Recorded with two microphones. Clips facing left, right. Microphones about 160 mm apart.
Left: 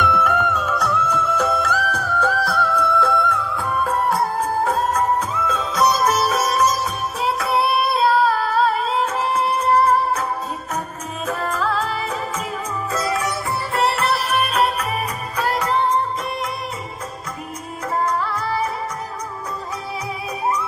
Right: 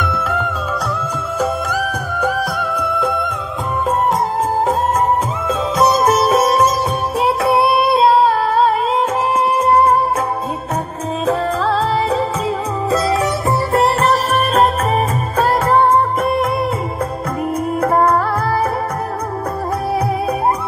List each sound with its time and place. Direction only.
0.0 s music: centre (ahead or behind)
5.9 s music: 25° right (ahead or behind)
7.2 s singing: 30° right (ahead or behind)
11.2 s music: 30° right (ahead or behind)
13.7 s music: 40° right (ahead or behind)
15.3 s music of bollywood: 50° right (ahead or behind)
17.8 s music: 55° right (ahead or behind)